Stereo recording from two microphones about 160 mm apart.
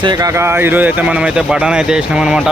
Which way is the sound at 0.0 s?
25° right (ahead or behind).